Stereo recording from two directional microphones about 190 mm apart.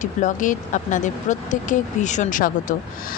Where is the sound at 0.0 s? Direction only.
40° left (ahead or behind).